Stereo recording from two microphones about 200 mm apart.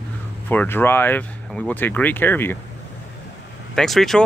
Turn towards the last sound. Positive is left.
turn(degrees=0)  # may be behind; listen again after turning